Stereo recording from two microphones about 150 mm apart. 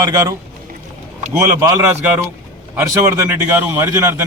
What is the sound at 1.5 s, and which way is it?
A man's voice, 20° right (ahead or behind).